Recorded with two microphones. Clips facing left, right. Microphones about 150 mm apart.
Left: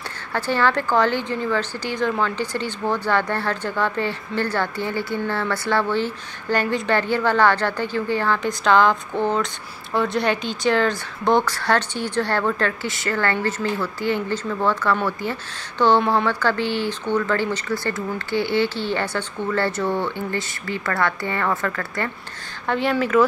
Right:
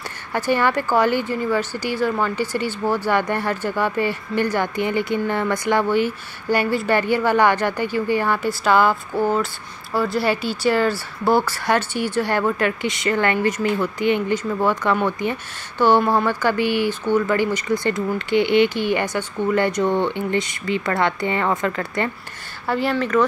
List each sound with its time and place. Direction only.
0.3 s speech: 10° right (ahead or behind)
22.7 s speech: centre (ahead or behind)